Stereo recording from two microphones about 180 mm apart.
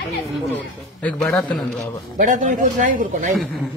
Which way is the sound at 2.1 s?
45° right (ahead or behind).